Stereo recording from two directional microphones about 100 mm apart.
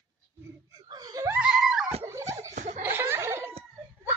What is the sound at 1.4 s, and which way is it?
Screaming, 5° right (ahead or behind).